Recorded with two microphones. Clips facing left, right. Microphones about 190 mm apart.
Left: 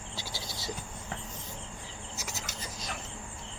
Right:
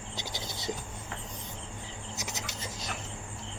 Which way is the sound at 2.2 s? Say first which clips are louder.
Right 2 dB; 20° right (ahead or behind).